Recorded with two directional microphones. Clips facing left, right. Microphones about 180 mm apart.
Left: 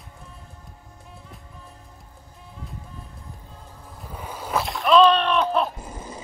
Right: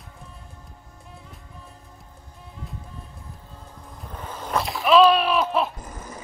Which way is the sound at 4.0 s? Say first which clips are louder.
Even; 10° left (ahead or behind).